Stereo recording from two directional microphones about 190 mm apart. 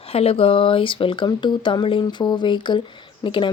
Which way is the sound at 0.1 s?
30° left (ahead or behind).